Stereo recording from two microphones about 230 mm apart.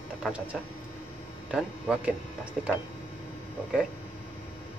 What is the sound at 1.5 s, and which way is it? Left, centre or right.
Speech, centre.